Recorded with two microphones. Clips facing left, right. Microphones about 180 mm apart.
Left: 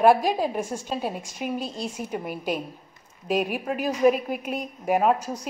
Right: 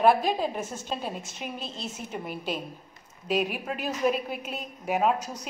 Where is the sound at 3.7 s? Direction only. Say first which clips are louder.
Left 5 dB; 10° left (ahead or behind).